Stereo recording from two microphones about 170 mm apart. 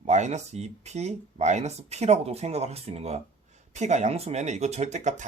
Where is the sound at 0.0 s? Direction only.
45° right (ahead or behind).